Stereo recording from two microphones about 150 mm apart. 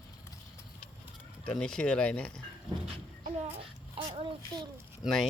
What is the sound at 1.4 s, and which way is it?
Speech, 5° left (ahead or behind).